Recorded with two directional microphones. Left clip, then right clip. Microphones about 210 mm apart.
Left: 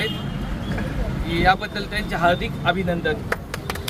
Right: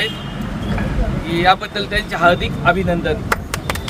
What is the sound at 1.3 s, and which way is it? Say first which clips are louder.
Speech: right 4 dB; 10° right (ahead or behind).